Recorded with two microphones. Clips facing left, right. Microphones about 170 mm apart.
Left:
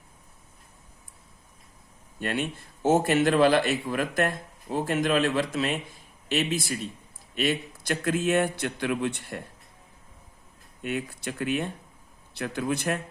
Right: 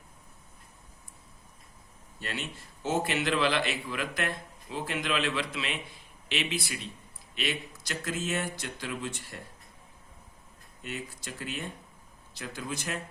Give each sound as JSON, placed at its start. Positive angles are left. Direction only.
{"t": 2.2, "sound": "a man's voice", "side_deg": 55}
{"t": 10.8, "sound": "speech", "side_deg": 60}